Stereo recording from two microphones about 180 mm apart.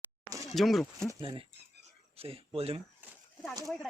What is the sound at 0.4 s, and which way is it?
Speech, centre (ahead or behind).